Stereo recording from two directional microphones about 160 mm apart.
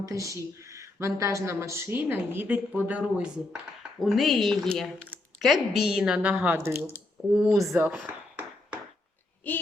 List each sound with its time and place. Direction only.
0.0 s a woman's voice: 20° right (ahead or behind); by 7.5 s 5° right (ahead or behind)
7.5 s a sound: 20° right (ahead or behind)
9.5 s speech: 10° left (ahead or behind)